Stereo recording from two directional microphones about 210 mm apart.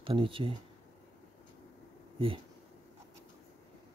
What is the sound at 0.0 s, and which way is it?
Speech, 25° right (ahead or behind).